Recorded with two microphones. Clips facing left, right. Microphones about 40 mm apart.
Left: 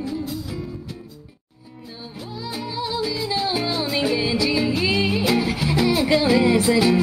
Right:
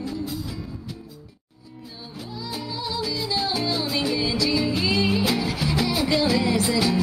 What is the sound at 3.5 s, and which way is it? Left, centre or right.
Music, left.